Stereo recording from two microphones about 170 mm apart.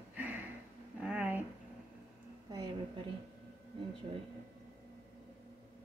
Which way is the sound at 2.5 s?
25° right (ahead or behind).